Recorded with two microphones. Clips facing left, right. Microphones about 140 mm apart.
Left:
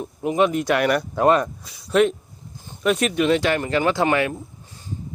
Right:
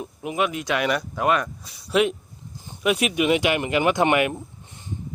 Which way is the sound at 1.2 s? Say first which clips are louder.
Left 5 dB; 30° left (ahead or behind).